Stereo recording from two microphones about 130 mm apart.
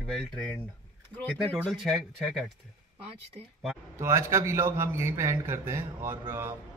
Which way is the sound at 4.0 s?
20° right (ahead or behind).